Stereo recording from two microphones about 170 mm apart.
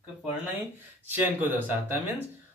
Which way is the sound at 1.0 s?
10° right (ahead or behind).